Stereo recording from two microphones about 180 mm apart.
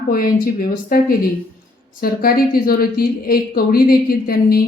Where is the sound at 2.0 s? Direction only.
55° left (ahead or behind).